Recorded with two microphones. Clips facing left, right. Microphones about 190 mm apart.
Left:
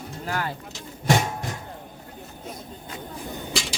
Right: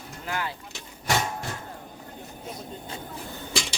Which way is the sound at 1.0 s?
20° left (ahead or behind).